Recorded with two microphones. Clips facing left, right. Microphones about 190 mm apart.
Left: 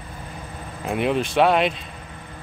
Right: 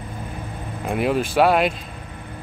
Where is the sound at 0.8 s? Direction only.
Centre (ahead or behind).